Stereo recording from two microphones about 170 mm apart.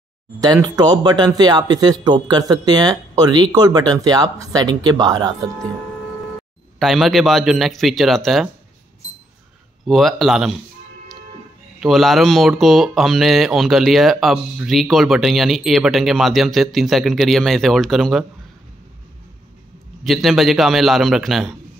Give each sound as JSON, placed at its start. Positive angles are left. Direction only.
{"t": 0.4, "sound": "speech", "side_deg": -25}
{"t": 6.8, "sound": "speech", "side_deg": 0}
{"t": 9.8, "sound": "speech", "side_deg": 0}
{"t": 11.8, "sound": "speech", "side_deg": 0}
{"t": 20.0, "sound": "speech", "side_deg": 0}